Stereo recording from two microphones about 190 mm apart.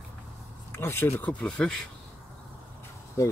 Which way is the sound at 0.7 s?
10° left (ahead or behind).